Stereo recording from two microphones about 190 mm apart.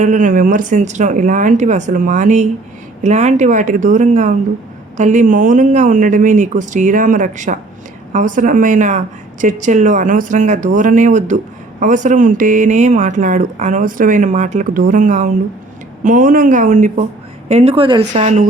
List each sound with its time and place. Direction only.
0.0 s speech: 40° right (ahead or behind)
18.1 s speech: 40° right (ahead or behind)